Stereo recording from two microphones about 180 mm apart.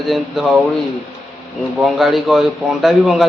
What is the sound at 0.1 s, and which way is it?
Speech, centre (ahead or behind).